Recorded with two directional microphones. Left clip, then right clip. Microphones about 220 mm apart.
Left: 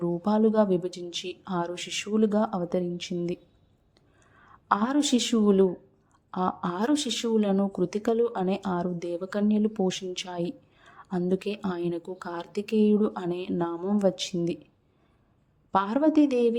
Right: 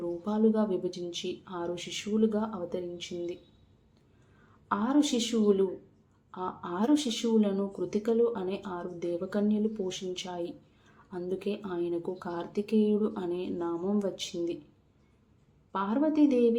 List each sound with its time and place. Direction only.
0.0 s speech: 40° left (ahead or behind)
4.7 s speech: 40° left (ahead or behind)
15.7 s speech: 40° left (ahead or behind)